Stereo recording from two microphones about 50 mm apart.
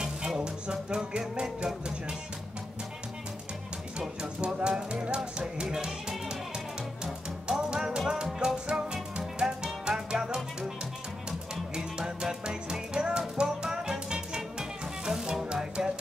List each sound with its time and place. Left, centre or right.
0.0 s music: centre
4.2 s speech: centre
5.9 s music: centre
7.4 s music: centre
9.7 s music: centre
11.7 s music: centre